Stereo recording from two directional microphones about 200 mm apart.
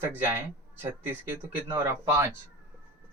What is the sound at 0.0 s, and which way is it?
Speech, 10° right (ahead or behind).